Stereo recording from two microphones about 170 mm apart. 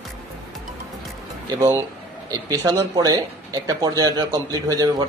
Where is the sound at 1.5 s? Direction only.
15° right (ahead or behind).